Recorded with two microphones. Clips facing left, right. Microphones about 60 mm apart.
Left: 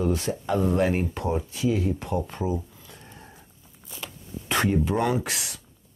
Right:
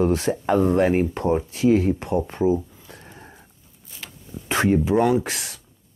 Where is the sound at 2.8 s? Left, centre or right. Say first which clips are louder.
Right 3 dB; right.